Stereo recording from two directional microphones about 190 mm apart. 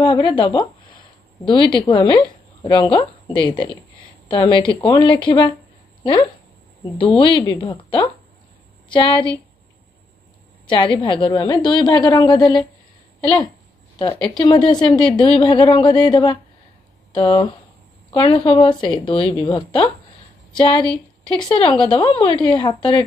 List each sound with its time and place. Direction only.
0.0 s a woman's voice: 25° left (ahead or behind)
7.2 s a woman's voice: 25° left (ahead or behind)
10.7 s a woman's voice: 25° left (ahead or behind)
13.9 s a woman's voice: 25° left (ahead or behind)